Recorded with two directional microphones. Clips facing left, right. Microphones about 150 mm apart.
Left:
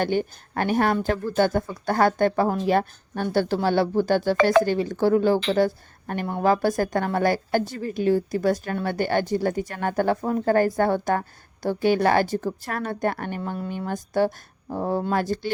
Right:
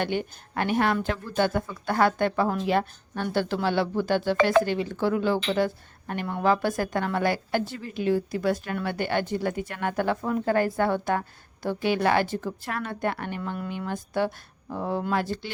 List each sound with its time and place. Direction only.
0.0 s a woman's voice: 40° left (ahead or behind)